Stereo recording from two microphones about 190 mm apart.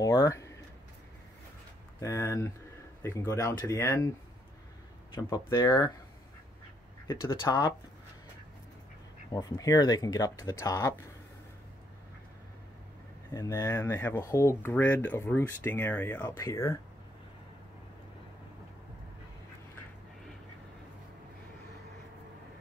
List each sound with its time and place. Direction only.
0.0 s speech: 15° left (ahead or behind)
2.0 s speech: 15° left (ahead or behind)
5.1 s speech: 20° left (ahead or behind)
7.2 s speech: 20° left (ahead or behind)
9.3 s speech: 20° left (ahead or behind)
13.3 s speech: 15° left (ahead or behind)